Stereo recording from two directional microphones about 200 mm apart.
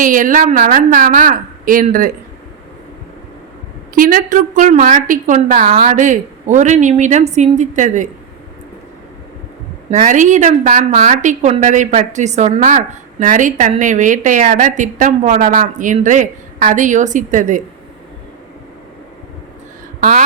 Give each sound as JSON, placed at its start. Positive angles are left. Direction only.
{"t": 0.0, "sound": "a woman's voice", "side_deg": -40}
{"t": 3.9, "sound": "a woman's voice", "side_deg": -45}
{"t": 9.9, "sound": "a woman's voice", "side_deg": -40}
{"t": 20.0, "sound": "speech", "side_deg": -40}